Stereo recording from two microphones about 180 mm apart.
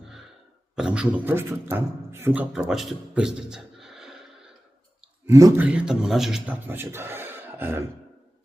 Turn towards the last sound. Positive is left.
turn(degrees=-10)  # may be behind; listen again after turning